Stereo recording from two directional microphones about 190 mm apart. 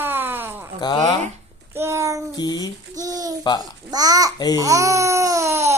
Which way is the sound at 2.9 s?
20° right (ahead or behind).